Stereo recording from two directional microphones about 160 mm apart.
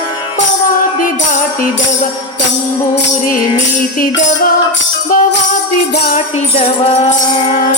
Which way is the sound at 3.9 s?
60° left (ahead or behind).